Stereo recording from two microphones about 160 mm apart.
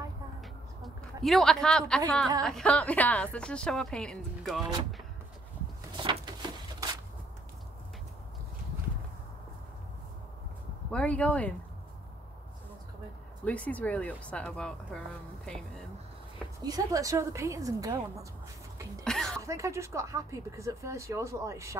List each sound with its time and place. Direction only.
0.8 s a woman's voice: centre (ahead or behind)
5.9 s a sound: 30° right (ahead or behind)
10.9 s speech: 5° left (ahead or behind)
13.5 s speech: 10° left (ahead or behind)
16.6 s speech: 20° right (ahead or behind)
19.0 s a sound: 5° left (ahead or behind)
19.4 s speech: 20° right (ahead or behind)